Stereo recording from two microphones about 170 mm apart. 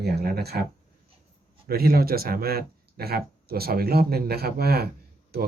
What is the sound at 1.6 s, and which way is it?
Speech, 65° right (ahead or behind).